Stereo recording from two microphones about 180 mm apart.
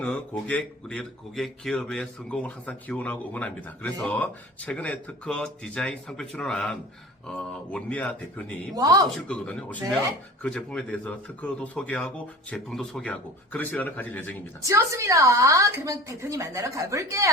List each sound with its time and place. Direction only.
0.0 s speech: 5° left (ahead or behind)
8.7 s speech: 20° right (ahead or behind)
9.0 s speech: 5° left (ahead or behind)
14.6 s a woman's voice: 15° right (ahead or behind)